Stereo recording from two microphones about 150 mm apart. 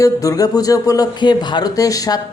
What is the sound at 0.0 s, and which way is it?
Speech, 25° left (ahead or behind).